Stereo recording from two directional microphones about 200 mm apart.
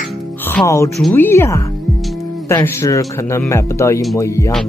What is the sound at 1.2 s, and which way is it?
Speech, 15° left (ahead or behind).